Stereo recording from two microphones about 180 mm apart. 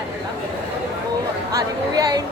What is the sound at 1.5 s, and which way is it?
Speech, 20° right (ahead or behind).